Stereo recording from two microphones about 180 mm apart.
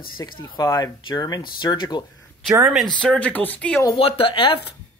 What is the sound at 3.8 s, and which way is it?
Speech, 30° left (ahead or behind).